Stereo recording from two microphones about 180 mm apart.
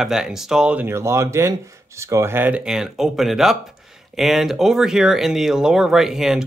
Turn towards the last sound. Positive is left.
turn(degrees=-5)  # may be behind; listen again after turning